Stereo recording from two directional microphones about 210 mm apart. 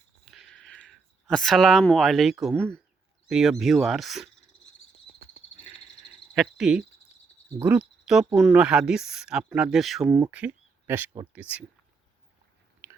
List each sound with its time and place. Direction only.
0.3 s a sound: centre (ahead or behind)
2.4 s speech: 5° left (ahead or behind)
6.3 s cricket: centre (ahead or behind)
7.6 s speech: 10° right (ahead or behind)
10.1 s speech: 15° right (ahead or behind)
12.8 s chewing: 10° right (ahead or behind)